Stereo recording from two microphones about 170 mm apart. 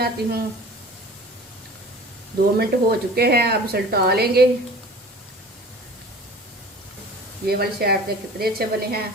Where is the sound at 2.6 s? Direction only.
70° right (ahead or behind).